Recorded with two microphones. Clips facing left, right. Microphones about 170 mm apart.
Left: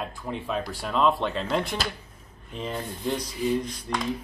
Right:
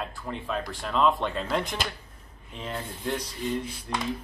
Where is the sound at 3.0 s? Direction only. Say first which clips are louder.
Left 4 dB; 10° left (ahead or behind).